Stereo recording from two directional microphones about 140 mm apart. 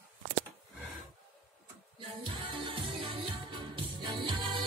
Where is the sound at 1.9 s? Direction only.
35° right (ahead or behind).